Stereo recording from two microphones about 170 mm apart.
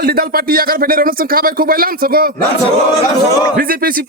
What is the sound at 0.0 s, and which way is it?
Speech, 60° right (ahead or behind).